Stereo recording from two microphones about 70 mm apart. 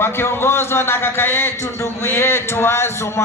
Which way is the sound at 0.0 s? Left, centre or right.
Left.